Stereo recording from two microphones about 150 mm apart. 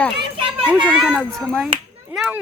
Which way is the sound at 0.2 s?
35° right (ahead or behind).